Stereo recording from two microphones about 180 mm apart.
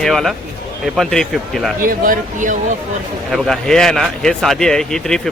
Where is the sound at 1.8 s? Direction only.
50° right (ahead or behind).